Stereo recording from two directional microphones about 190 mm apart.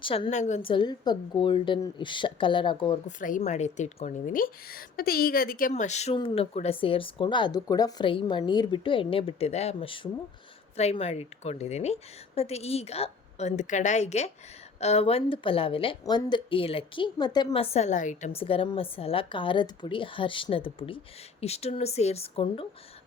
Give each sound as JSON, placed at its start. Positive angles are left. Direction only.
{"t": 0.0, "sound": "speech", "side_deg": 30}
{"t": 3.1, "sound": "a woman's voice", "side_deg": 45}